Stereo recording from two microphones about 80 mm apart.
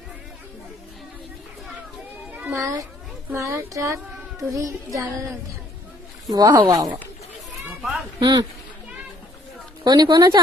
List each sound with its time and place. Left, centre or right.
2.3 s cat: right
2.6 s a child's voice: right
6.2 s speech: right
8.2 s a woman's voice: right
9.8 s a woman's voice: right